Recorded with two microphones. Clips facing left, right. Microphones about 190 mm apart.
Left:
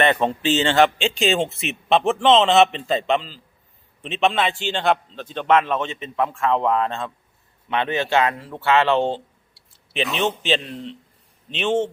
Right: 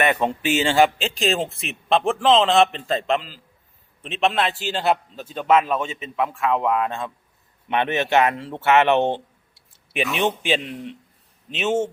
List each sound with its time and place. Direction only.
0.0 s speech: 10° right (ahead or behind)
7.7 s a man's voice: 20° right (ahead or behind)